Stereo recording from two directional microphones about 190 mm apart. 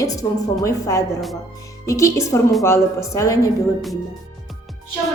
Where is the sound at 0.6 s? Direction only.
15° left (ahead or behind).